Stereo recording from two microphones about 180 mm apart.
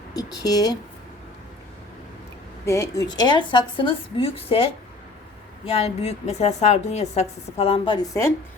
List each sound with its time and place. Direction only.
0.1 s a woman's voice: 20° left (ahead or behind)
2.6 s a woman's voice: 15° left (ahead or behind)